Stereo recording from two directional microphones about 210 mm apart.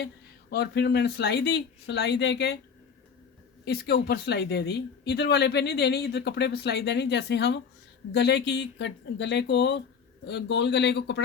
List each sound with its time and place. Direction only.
0.5 s speech: 50° left (ahead or behind)
3.7 s speech: 50° left (ahead or behind)